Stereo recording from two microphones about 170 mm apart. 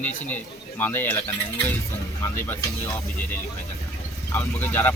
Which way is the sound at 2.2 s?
15° left (ahead or behind).